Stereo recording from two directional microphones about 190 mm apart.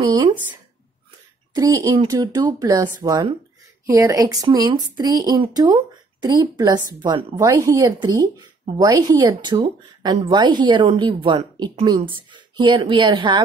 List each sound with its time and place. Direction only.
0.0 s a sound: 25° right (ahead or behind)
1.5 s speech: 20° right (ahead or behind)
7.3 s speech: 15° right (ahead or behind)